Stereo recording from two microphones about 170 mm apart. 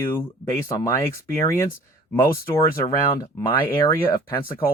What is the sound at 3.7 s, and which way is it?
Speech, 25° left (ahead or behind).